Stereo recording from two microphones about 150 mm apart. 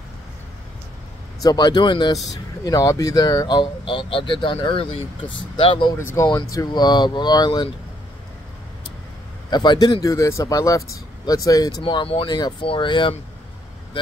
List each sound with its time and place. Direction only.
1.4 s speech: 25° left (ahead or behind)
5.9 s speech: 20° left (ahead or behind)
9.5 s speech: 30° left (ahead or behind)
11.8 s speech: 35° left (ahead or behind)